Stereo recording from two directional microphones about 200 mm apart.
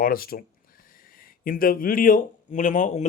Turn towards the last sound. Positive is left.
turn(degrees=35)  # may be behind; listen again after turning